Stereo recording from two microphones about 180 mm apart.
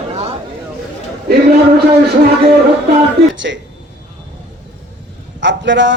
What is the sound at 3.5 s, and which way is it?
Speech, 70° right (ahead or behind).